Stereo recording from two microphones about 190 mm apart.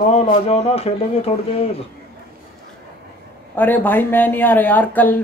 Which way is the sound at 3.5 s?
10° left (ahead or behind).